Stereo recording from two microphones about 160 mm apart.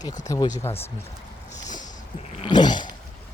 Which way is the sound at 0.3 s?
25° left (ahead or behind).